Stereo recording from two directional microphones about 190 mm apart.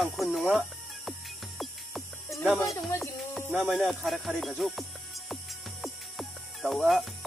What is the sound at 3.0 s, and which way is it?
Music, centre (ahead or behind).